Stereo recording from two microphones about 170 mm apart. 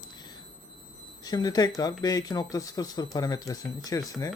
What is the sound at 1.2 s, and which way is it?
Speech, 25° left (ahead or behind).